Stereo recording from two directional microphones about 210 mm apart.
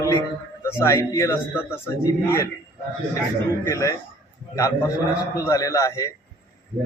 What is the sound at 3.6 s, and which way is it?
Speech, 15° left (ahead or behind).